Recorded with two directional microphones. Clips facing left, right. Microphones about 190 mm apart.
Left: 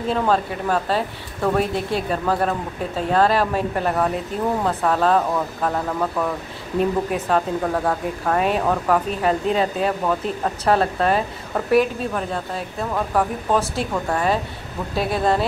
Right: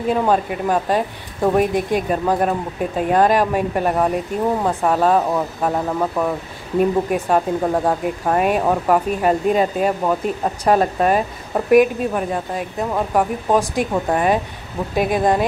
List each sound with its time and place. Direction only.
0.1 s speech: 15° right (ahead or behind)